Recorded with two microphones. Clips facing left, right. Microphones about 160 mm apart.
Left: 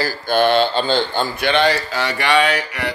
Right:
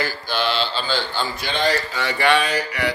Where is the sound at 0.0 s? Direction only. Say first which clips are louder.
Left 7 dB; 45° left (ahead or behind); by 2.9 s 90° left.